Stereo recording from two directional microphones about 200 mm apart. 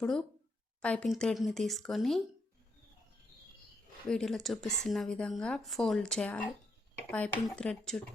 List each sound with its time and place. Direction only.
0.0 s speech: 5° left (ahead or behind)
4.1 s speech: centre (ahead or behind)